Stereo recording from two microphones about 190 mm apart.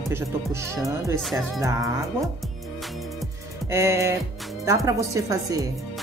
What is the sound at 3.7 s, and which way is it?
Speech, 15° right (ahead or behind).